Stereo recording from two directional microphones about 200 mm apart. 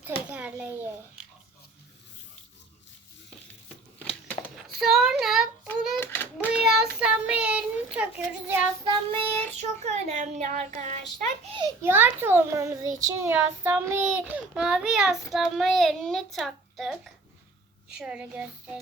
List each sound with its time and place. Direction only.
0.0 s a child's voice: 5° right (ahead or behind)
4.4 s a sound: centre (ahead or behind)
6.0 s child singing: 10° left (ahead or behind)
6.5 s child singing: 5° right (ahead or behind)
8.8 s child singing: 25° right (ahead or behind)
9.6 s a child's voice: 35° right (ahead or behind)
11.8 s child singing: 10° right (ahead or behind)
15.3 s a child's voice: centre (ahead or behind)